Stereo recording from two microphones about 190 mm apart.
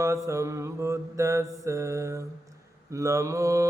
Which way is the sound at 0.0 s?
15° right (ahead or behind).